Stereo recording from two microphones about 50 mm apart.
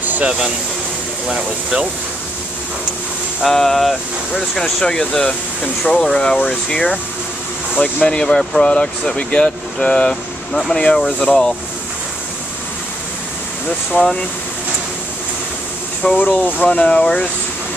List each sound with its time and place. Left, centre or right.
1.3 s speech: centre
3.4 s speech: centre
13.9 s speech: left
16.0 s speech: left